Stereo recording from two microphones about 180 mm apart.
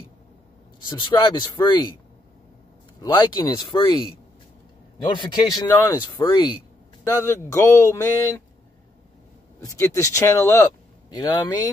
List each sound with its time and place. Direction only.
0.8 s speech: 25° left (ahead or behind)
3.0 s speech: 25° left (ahead or behind)
9.7 s speech: 15° left (ahead or behind)